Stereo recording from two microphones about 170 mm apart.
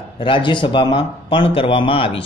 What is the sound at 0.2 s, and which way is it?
A man's voice, 30° left (ahead or behind).